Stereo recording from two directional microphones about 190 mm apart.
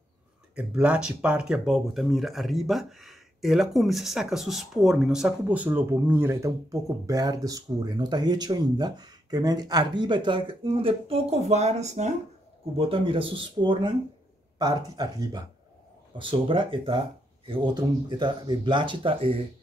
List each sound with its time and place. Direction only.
0.6 s speech: 5° right (ahead or behind); by 19.4 s 30° right (ahead or behind)